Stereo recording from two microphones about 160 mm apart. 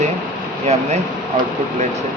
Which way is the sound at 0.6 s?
45° right (ahead or behind).